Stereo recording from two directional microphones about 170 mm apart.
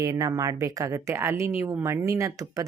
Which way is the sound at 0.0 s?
20° right (ahead or behind).